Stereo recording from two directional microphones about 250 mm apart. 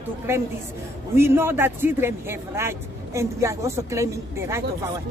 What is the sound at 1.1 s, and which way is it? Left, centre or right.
Speech, centre.